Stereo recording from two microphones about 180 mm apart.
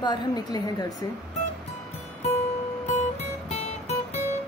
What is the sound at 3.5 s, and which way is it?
Music, 35° left (ahead or behind).